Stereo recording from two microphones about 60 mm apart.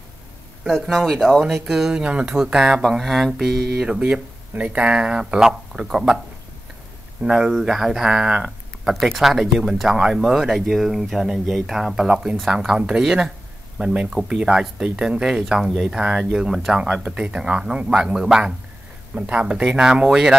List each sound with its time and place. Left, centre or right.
0.7 s speech: centre
1.4 s speech: centre
4.0 s speech: centre
7.2 s speech: centre
7.5 s speech: centre
19.1 s speech: right